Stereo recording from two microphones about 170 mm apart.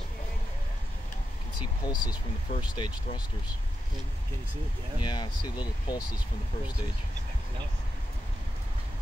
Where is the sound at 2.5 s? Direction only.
25° left (ahead or behind).